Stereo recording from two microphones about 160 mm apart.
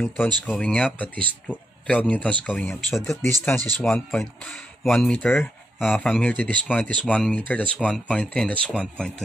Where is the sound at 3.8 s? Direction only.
5° left (ahead or behind).